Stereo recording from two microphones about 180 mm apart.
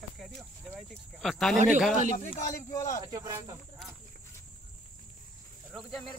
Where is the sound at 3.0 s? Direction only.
20° right (ahead or behind).